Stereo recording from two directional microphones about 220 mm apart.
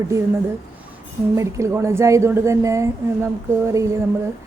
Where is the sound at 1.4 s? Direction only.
15° right (ahead or behind).